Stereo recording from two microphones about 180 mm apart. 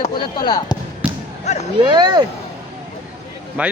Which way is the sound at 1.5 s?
40° left (ahead or behind).